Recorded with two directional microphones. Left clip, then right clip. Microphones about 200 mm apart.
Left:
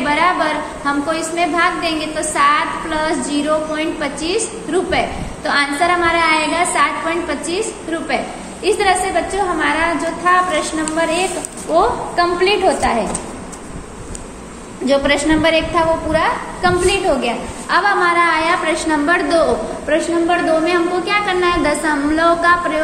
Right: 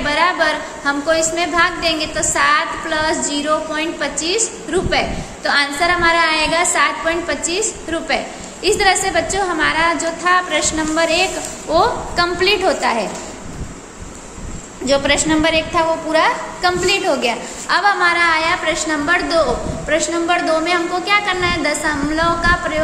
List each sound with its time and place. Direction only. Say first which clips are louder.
0.1 s a woman's voice: even; 15° right (ahead or behind)
14.9 s a woman's voice: left 1 dB; 10° right (ahead or behind)